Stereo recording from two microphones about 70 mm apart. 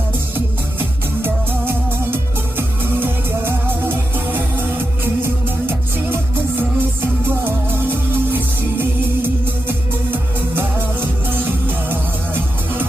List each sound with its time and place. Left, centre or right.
0.3 s music: right